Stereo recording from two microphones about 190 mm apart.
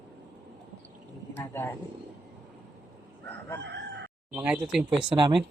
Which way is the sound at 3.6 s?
65° right (ahead or behind).